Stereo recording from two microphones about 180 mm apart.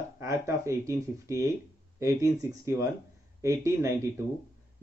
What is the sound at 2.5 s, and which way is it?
Speech, 15° right (ahead or behind).